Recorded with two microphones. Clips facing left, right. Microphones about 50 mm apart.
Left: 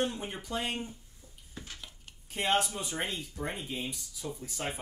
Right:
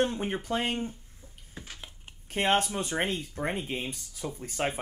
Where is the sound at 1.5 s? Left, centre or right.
Right.